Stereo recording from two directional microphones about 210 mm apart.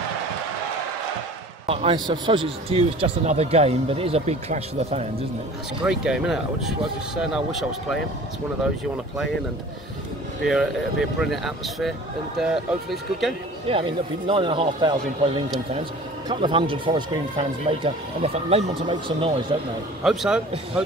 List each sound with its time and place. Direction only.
1.7 s speech: 25° right (ahead or behind)
5.9 s speech: 5° right (ahead or behind)
10.4 s speech: centre (ahead or behind)
13.7 s speech: 25° right (ahead or behind)
20.0 s speech: centre (ahead or behind)